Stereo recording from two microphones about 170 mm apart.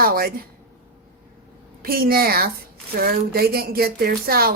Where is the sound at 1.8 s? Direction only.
60° right (ahead or behind).